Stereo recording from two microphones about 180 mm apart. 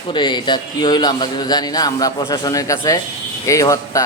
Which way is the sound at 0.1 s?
25° left (ahead or behind).